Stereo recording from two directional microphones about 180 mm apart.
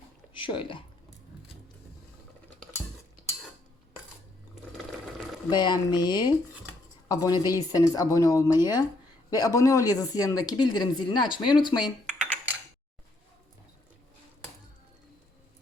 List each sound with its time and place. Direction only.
0.3 s speech: 30° left (ahead or behind)
5.5 s speech: 25° left (ahead or behind)